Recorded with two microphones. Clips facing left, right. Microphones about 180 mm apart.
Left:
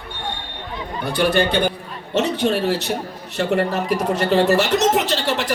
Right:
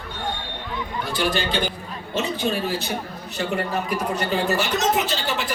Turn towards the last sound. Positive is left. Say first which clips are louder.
# left 4 dB
turn(degrees=75)  # may be behind; listen again after turning